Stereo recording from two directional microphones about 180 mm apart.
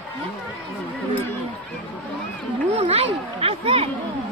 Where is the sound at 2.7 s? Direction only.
35° right (ahead or behind).